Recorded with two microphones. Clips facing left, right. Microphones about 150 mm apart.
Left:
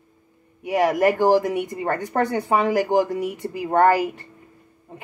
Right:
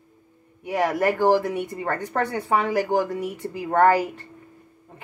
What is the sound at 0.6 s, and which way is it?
Speech, 15° left (ahead or behind).